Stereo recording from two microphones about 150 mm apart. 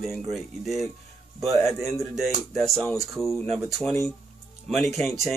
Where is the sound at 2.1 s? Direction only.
Centre (ahead or behind).